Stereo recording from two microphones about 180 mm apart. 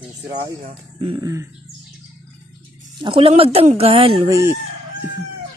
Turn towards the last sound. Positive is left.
turn(degrees=-15)  # may be behind; listen again after turning